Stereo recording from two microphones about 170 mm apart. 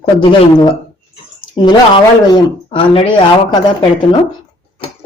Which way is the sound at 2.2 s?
25° left (ahead or behind).